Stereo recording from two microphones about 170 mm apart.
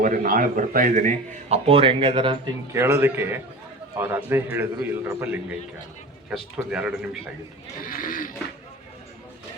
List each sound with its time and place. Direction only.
0.0 s a man's voice: 55° right (ahead or behind); by 2.4 s 30° right (ahead or behind)
2.7 s a man's voice: 15° right (ahead or behind)
7.9 s livestock: 55° left (ahead or behind)